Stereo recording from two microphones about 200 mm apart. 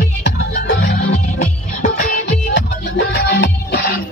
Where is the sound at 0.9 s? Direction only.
35° left (ahead or behind).